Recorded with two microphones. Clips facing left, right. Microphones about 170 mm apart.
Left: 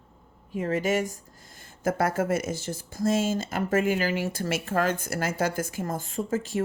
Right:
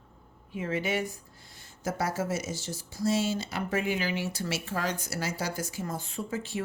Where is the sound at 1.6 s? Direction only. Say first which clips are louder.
Left 6 dB; 55° left (ahead or behind).